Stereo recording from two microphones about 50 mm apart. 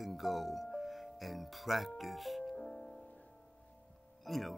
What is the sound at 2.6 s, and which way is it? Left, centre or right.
Music, centre.